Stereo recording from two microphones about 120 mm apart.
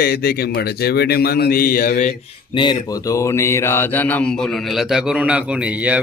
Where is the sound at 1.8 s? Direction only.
80° left.